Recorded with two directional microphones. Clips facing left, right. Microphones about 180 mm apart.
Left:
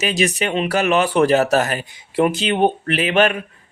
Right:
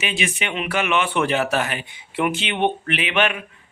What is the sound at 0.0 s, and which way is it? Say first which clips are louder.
A man's voice: left 6 dB; 40° left (ahead or behind).